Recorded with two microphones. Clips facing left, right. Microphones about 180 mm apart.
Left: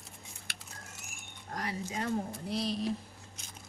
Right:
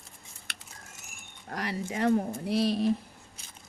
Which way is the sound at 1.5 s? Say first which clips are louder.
Right 4 dB; 70° right (ahead or behind).